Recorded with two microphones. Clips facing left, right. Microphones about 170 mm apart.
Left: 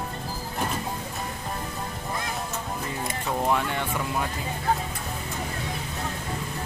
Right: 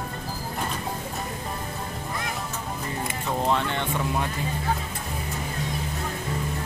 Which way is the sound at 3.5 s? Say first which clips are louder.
Even; 10° left (ahead or behind).